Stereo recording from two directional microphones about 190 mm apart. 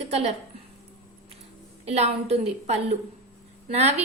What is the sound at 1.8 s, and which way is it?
A woman's voice, 35° right (ahead or behind).